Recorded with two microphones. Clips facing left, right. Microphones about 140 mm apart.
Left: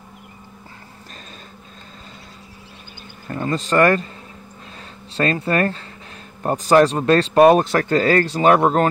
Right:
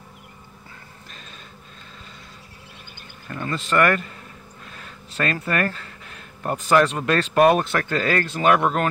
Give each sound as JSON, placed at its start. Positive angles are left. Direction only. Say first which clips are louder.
{"t": 3.3, "sound": "speech", "louder": "left 5 dB", "side_deg": 35}
{"t": 4.7, "sound": "a sound", "louder": "left 5 dB", "side_deg": 30}
{"t": 6.4, "sound": "speech", "louder": "left 4 dB", "side_deg": 35}